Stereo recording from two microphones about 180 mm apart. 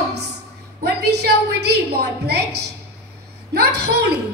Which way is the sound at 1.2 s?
65° right (ahead or behind).